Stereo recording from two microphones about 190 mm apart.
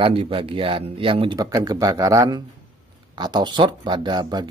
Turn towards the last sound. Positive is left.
turn(degrees=-25)  # may be behind; listen again after turning